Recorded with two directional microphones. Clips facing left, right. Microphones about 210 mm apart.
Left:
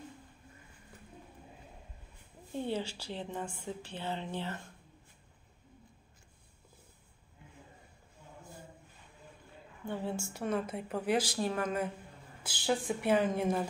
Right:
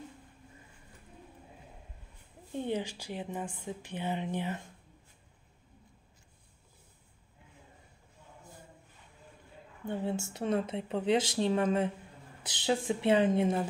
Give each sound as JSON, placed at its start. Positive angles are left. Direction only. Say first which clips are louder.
{"t": 2.5, "sound": "a woman's voice", "louder": "right 2 dB", "side_deg": -15}
{"t": 9.8, "sound": "speech", "louder": "right 3 dB", "side_deg": -20}